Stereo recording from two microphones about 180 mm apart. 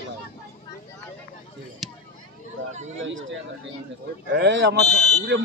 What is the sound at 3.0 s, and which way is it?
Speech, 90° right.